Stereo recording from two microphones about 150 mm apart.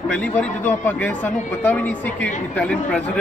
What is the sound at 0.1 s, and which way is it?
A man's voice, 10° left (ahead or behind).